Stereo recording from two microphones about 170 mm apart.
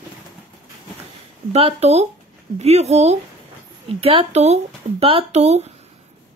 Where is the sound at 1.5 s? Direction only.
35° right (ahead or behind).